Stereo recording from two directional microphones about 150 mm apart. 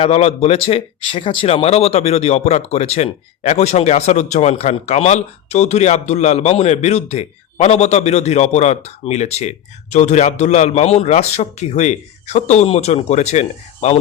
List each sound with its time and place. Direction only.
0.0 s speech: 45° left (ahead or behind)